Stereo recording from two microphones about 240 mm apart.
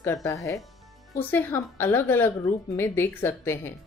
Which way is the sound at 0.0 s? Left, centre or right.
Centre.